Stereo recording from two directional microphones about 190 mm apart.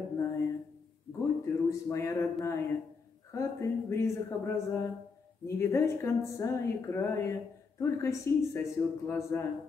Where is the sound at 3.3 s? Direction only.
15° left (ahead or behind).